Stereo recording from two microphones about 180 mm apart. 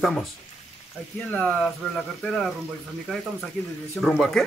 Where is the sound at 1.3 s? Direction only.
5° left (ahead or behind).